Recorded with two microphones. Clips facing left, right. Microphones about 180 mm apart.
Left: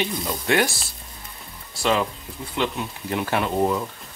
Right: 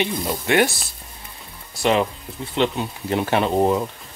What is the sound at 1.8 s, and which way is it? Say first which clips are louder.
Speech: right 3 dB; 20° right (ahead or behind).